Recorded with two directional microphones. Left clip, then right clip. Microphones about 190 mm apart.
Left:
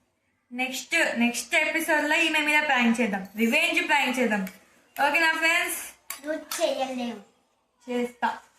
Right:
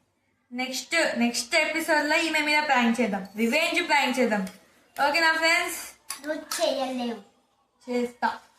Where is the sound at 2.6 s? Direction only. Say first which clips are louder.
Even; 15° right (ahead or behind).